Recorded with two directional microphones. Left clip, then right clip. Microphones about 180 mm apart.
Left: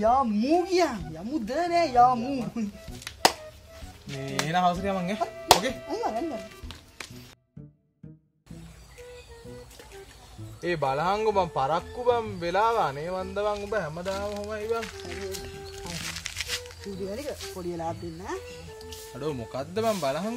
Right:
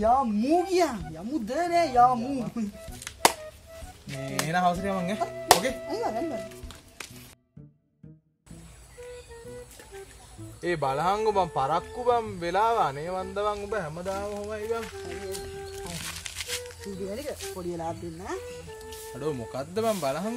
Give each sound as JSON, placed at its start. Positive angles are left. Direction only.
{"t": 0.0, "sound": "speech", "side_deg": 5}
{"t": 4.1, "sound": "chopping", "side_deg": -5}
{"t": 4.5, "sound": "speech", "side_deg": -10}
{"t": 5.8, "sound": "chopping", "side_deg": 5}
{"t": 10.6, "sound": "speech", "side_deg": -25}
{"t": 15.3, "sound": "a sound", "side_deg": 15}
{"t": 16.6, "sound": "speech", "side_deg": 0}
{"t": 17.6, "sound": "speech", "side_deg": 15}
{"t": 18.2, "sound": "speech", "side_deg": 0}